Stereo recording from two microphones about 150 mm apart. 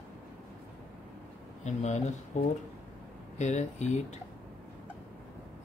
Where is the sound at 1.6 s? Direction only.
50° left (ahead or behind).